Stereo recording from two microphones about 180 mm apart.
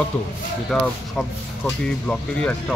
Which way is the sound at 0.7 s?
5° left (ahead or behind).